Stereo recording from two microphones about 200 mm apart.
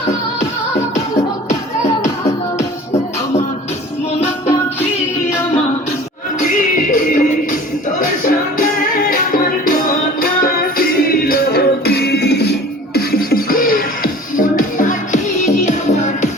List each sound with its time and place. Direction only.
6.4 s music: 45° left (ahead or behind)